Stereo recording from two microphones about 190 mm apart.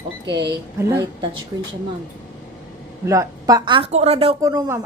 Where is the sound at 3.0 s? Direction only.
15° right (ahead or behind).